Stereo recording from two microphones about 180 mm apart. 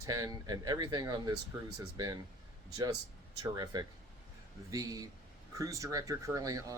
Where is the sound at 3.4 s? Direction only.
20° right (ahead or behind).